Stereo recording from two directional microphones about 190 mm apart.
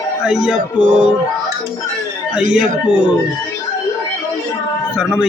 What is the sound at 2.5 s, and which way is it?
Music, 5° right (ahead or behind).